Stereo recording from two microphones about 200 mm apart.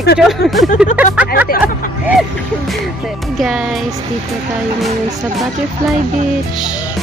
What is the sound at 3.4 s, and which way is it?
Speech, centre (ahead or behind).